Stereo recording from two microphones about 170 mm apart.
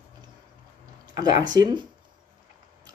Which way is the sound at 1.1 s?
25° right (ahead or behind).